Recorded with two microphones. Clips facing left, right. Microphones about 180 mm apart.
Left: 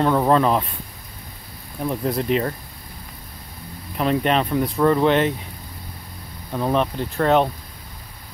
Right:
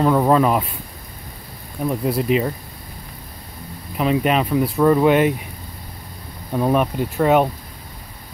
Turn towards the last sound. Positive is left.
turn(degrees=-10)  # may be behind; listen again after turning